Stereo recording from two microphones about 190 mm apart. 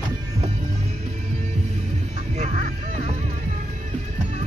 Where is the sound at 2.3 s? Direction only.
40° right (ahead or behind).